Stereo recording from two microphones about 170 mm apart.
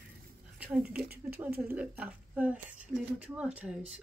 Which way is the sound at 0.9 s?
65° right (ahead or behind).